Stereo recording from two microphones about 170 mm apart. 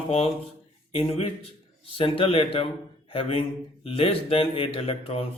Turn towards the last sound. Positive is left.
turn(degrees=35)  # may be behind; listen again after turning